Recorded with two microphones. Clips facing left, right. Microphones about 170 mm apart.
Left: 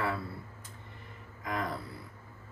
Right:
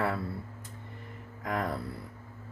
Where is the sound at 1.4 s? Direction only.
60° right (ahead or behind).